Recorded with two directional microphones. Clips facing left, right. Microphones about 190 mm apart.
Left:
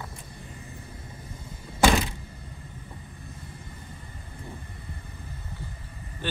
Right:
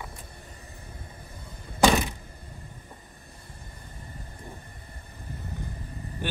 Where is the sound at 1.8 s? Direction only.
15° right (ahead or behind).